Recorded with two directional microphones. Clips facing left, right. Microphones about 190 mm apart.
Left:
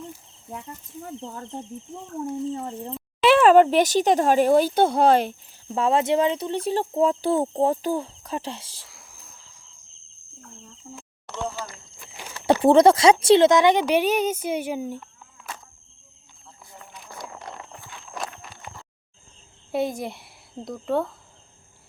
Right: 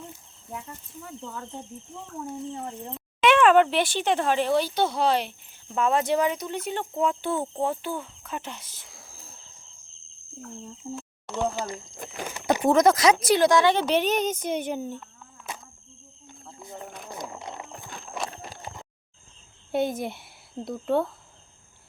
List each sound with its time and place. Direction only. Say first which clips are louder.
1.0 s speech: left 2 dB; 35° left (ahead or behind)
3.2 s speech: left 3 dB; 35° left (ahead or behind); by 5.3 s 50° left (ahead or behind)
5.6 s speech: left 3 dB; 30° left (ahead or behind)
8.9 s bird: right 2 dB; 25° right (ahead or behind)
10.8 s speech: right 5 dB; 25° right (ahead or behind)
11.9 s a sound: right 5 dB; 55° right (ahead or behind)
12.6 s speech: left 4 dB; 30° left (ahead or behind); by 15.0 s 10° left (ahead or behind)
17.1 s a sound: even; 20° right (ahead or behind)
17.8 s horse: right 3 dB; 40° right (ahead or behind)
18.3 s clip-clop: right 3 dB; 35° right (ahead or behind)
19.7 s a woman's voice: even; centre (ahead or behind)